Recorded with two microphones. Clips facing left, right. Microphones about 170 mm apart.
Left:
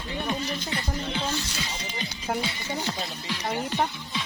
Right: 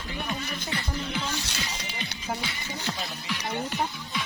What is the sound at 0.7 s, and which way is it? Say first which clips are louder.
Music: left 1 dB; 30° left (ahead or behind).